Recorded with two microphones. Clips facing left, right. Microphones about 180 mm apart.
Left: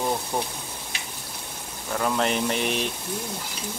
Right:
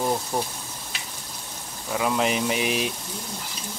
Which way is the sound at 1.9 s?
5° right (ahead or behind).